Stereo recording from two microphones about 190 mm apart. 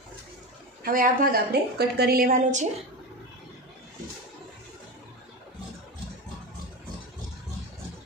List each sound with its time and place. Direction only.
0.8 s a woman's voice: 50° right (ahead or behind)